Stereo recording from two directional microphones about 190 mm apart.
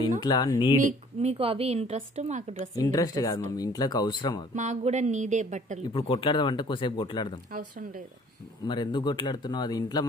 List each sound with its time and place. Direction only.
0.2 s speech: 20° left (ahead or behind)
0.7 s speech: 40° right (ahead or behind)
1.4 s a woman's voice: 30° right (ahead or behind)
2.7 s speech: 20° left (ahead or behind)
4.6 s a woman's voice: 35° right (ahead or behind)
5.9 s speech: 25° left (ahead or behind)
8.6 s speech: 25° left (ahead or behind)